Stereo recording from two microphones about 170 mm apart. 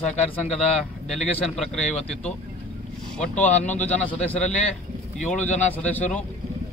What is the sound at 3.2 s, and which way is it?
Speech, 10° left (ahead or behind).